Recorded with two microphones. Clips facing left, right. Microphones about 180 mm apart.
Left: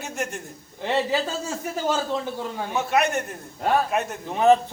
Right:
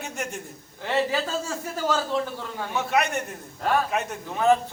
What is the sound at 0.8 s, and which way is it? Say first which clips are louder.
A man's voice: left 1 dB; 20° left (ahead or behind).